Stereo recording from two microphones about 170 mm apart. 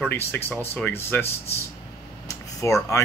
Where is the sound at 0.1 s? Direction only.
10° left (ahead or behind).